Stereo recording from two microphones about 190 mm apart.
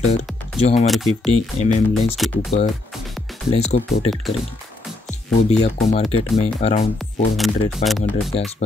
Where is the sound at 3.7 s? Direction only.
30° left (ahead or behind).